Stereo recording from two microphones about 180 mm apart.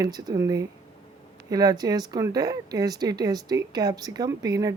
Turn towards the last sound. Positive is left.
turn(degrees=-20)  # may be behind; listen again after turning